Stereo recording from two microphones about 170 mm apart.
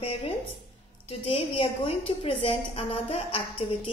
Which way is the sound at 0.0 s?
35° left (ahead or behind).